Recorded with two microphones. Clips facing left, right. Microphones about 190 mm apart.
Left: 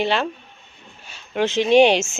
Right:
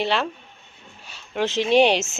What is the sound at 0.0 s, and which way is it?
Speech, centre (ahead or behind).